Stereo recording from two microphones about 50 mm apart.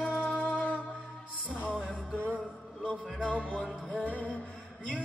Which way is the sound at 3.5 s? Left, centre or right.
Centre.